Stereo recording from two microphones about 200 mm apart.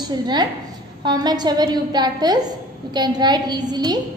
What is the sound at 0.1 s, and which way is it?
A woman's voice, 20° right (ahead or behind).